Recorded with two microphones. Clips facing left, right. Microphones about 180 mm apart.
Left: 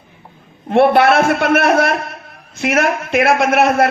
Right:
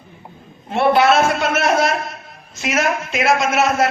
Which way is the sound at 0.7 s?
60° left (ahead or behind).